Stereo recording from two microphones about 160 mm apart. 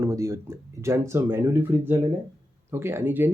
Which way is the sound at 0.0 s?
20° right (ahead or behind).